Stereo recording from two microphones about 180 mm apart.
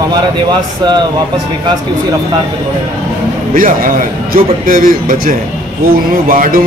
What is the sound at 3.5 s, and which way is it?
A man's voice, 50° right (ahead or behind).